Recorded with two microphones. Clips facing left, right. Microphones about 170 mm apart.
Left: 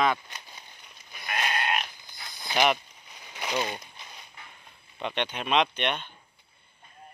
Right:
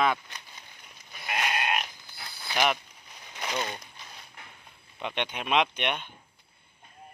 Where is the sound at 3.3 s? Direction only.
5° left (ahead or behind).